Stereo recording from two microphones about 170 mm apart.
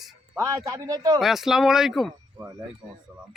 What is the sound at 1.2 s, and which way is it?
Speech, centre (ahead or behind).